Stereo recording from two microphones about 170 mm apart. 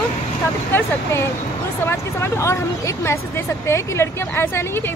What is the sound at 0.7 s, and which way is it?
Speech, 10° left (ahead or behind).